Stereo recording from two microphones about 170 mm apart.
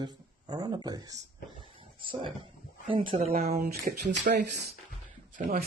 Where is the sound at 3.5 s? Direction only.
65° right (ahead or behind).